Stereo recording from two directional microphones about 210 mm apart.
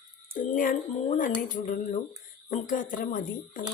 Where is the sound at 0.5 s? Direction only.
40° left (ahead or behind).